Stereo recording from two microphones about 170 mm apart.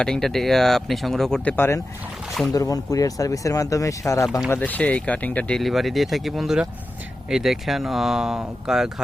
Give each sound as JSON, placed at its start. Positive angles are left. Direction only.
{"t": 0.0, "sound": "speech", "side_deg": 5}